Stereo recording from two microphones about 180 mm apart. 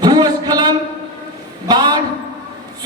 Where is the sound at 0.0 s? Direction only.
20° right (ahead or behind).